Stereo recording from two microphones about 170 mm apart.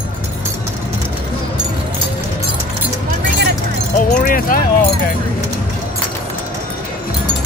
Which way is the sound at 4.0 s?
55° left (ahead or behind).